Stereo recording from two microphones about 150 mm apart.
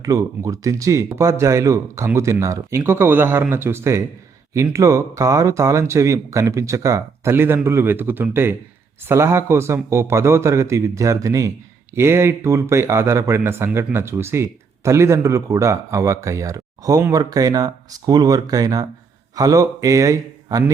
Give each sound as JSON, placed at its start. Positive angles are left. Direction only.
{"t": 0.0, "sound": "speech", "side_deg": -20}